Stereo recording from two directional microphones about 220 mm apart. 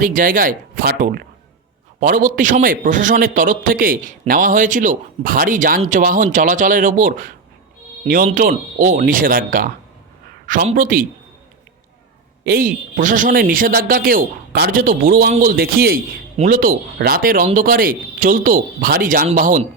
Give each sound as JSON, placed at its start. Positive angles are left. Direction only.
{"t": 0.0, "sound": "a man's voice", "side_deg": -40}
{"t": 12.5, "sound": "a man's voice", "side_deg": -40}